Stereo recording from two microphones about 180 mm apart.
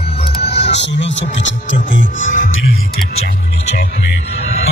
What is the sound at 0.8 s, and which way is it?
Speech, 80° left.